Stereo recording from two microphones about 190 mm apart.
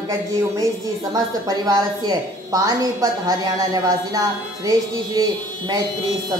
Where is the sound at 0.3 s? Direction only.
15° right (ahead or behind).